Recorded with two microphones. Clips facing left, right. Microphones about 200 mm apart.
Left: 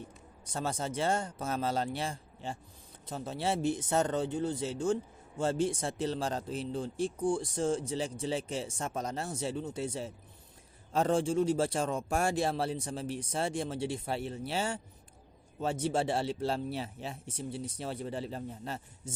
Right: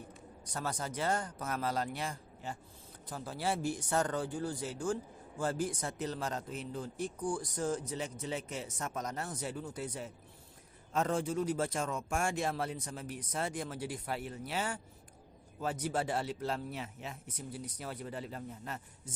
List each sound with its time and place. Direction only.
0.5 s speech: 25° left (ahead or behind)